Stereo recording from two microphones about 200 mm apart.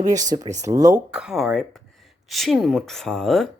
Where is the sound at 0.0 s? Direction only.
20° right (ahead or behind).